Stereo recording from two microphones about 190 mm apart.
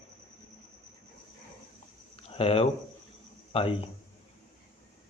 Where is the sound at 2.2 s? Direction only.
30° left (ahead or behind).